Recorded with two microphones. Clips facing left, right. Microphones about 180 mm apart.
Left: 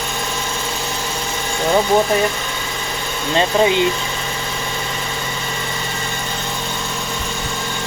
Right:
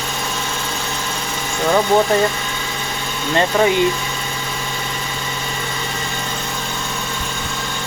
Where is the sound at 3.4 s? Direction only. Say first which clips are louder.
Even; 20° left (ahead or behind).